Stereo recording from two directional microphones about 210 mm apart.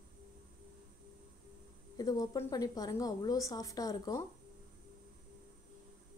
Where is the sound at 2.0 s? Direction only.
15° left (ahead or behind).